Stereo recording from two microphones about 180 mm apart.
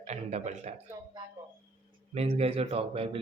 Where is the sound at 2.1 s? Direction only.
35° right (ahead or behind).